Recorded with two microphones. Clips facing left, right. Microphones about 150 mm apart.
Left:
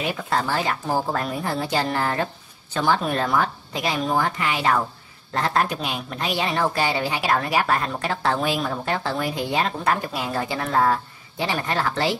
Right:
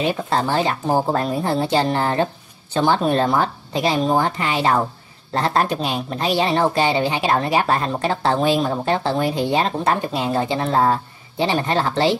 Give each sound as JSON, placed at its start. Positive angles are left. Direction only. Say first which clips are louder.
{"t": 0.0, "sound": "a woman's voice", "louder": "right 4 dB", "side_deg": -30}